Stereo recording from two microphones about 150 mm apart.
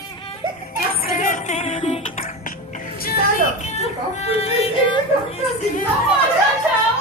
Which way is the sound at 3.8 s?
40° left (ahead or behind).